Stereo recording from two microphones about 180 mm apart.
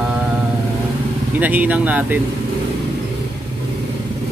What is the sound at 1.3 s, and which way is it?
Speech, 10° right (ahead or behind).